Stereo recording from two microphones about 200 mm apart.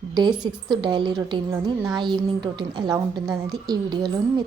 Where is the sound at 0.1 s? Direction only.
20° right (ahead or behind).